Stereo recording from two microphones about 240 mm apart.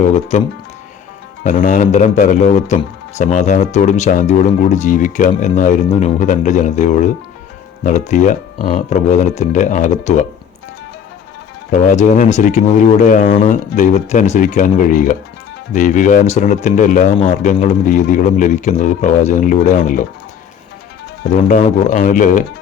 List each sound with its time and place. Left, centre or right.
0.1 s speech: left
1.5 s speech: left
11.7 s speech: left
21.3 s speech: left